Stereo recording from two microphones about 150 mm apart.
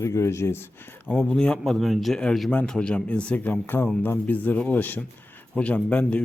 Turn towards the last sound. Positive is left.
turn(degrees=10)  # may be behind; listen again after turning